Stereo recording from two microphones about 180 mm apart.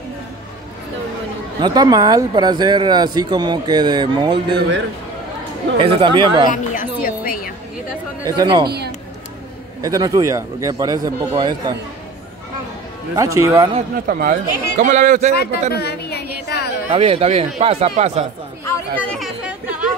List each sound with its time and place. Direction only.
1.6 s speech: 20° right (ahead or behind)
4.6 s a man's voice: 75° right (ahead or behind)
5.8 s speech: 25° right (ahead or behind)
6.5 s a sound: 45° left (ahead or behind)
7.0 s music: 55° left (ahead or behind)
8.4 s speech: 25° right (ahead or behind)
8.6 s speech: 65° right (ahead or behind)
9.8 s speech: 20° right (ahead or behind)
13.1 s a man's voice: 20° right (ahead or behind)
14.0 s speech: 55° right (ahead or behind)
15.7 s a sound: 65° left (ahead or behind)
16.9 s speech: 30° right (ahead or behind)
18.7 s chatter: 5° left (ahead or behind)